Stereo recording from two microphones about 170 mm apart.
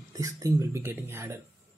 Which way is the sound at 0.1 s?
20° right (ahead or behind).